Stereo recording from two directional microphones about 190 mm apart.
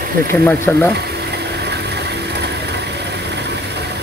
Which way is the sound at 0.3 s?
5° left (ahead or behind).